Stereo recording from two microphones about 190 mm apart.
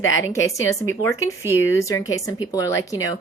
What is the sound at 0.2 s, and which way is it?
Speech, 15° left (ahead or behind).